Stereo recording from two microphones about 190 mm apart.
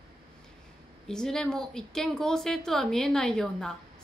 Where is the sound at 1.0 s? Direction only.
5° left (ahead or behind).